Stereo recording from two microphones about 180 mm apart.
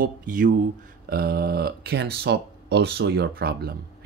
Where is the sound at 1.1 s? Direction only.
60° right (ahead or behind).